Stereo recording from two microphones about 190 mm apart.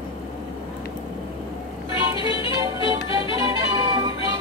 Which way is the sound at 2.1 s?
25° left (ahead or behind).